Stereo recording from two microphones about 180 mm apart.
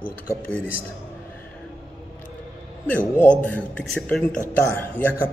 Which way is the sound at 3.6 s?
5° left (ahead or behind).